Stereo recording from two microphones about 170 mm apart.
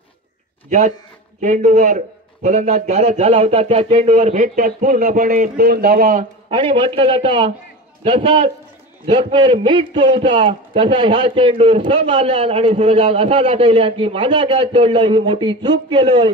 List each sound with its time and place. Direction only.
0.7 s a man's voice: 50° right (ahead or behind)
6.5 s a man's voice: 30° right (ahead or behind)